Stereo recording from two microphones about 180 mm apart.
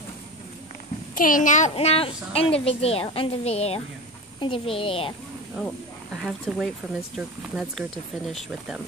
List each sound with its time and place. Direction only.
1.1 s a child's voice: 50° left (ahead or behind); by 5.1 s 30° left (ahead or behind)
6.2 s speech: centre (ahead or behind)